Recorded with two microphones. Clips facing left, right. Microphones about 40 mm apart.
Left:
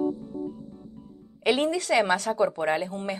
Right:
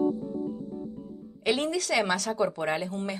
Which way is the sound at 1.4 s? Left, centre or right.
Centre.